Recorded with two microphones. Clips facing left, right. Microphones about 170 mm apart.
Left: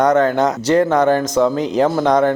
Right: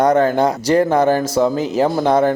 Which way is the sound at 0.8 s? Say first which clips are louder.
Even; 35° right (ahead or behind).